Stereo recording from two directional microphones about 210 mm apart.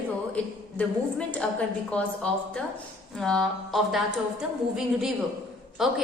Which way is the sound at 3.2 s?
Centre (ahead or behind).